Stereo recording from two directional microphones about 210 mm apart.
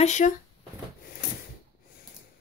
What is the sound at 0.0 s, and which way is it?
Speech, 35° left (ahead or behind).